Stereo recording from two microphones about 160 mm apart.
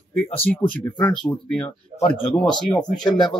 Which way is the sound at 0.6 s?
5° left (ahead or behind).